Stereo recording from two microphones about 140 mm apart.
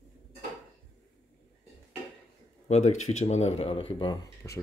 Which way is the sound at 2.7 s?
50° left (ahead or behind).